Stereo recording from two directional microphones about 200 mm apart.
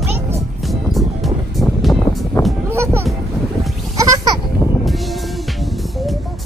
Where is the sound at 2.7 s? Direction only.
15° right (ahead or behind).